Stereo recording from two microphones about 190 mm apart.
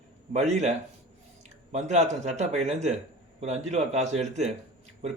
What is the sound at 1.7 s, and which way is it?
Speech, 35° right (ahead or behind).